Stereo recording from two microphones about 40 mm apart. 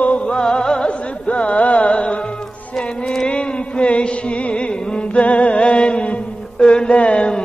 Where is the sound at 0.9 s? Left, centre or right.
Left.